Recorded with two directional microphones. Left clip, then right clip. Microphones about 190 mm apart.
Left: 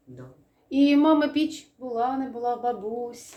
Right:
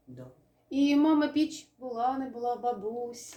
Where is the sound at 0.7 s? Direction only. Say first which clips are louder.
Left 5 dB; 20° left (ahead or behind).